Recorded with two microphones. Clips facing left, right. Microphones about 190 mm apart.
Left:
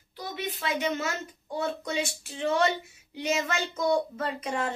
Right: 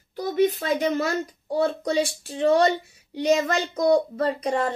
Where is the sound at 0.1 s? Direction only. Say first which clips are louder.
Right 14 dB; 45° right (ahead or behind).